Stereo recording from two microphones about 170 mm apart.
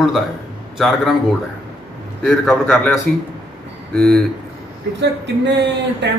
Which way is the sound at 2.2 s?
5° left (ahead or behind).